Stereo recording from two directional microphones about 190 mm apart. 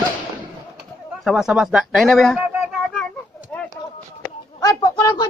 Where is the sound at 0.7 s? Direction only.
Centre (ahead or behind).